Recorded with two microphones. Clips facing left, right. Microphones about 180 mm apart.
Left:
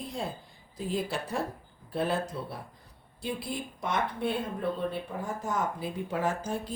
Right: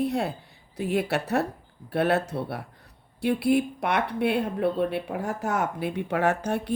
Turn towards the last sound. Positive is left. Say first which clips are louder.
# right 6 dB
turn(degrees=-70)  # may be behind; listen again after turning